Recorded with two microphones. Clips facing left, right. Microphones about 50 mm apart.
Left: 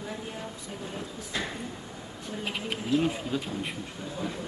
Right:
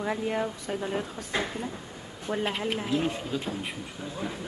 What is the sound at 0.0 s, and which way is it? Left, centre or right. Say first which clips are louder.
A woman's voice: right 9 dB; right.